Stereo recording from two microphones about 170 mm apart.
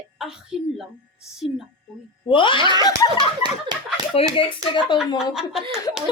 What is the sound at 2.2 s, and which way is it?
Speech, 30° left (ahead or behind).